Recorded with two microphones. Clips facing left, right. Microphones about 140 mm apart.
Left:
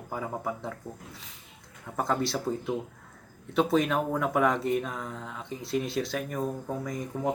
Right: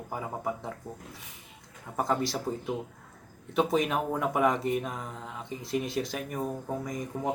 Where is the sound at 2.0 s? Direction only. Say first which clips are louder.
Left 1 dB; 15° right (ahead or behind).